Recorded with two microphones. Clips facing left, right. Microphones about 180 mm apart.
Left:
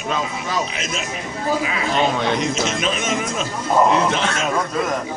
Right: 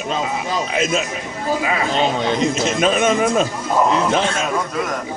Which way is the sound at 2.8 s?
45° right (ahead or behind).